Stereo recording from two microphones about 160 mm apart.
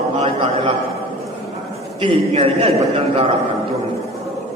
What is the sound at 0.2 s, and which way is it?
Speech, 35° right (ahead or behind).